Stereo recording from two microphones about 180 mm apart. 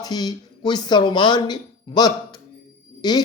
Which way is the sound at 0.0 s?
20° left (ahead or behind).